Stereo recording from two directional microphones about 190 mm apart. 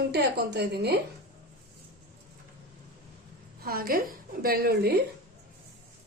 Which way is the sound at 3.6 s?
50° right (ahead or behind).